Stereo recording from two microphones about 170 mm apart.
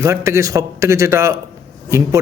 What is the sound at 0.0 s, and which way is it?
A man's voice, 20° right (ahead or behind).